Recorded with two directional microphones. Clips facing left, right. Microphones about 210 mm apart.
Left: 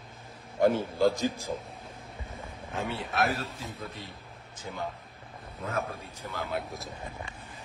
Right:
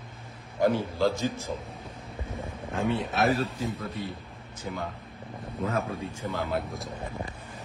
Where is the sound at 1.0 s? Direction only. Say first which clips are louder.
Left 1 dB; 15° left (ahead or behind).